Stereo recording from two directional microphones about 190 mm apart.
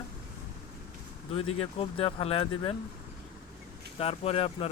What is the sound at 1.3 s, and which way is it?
Speech, 30° left (ahead or behind).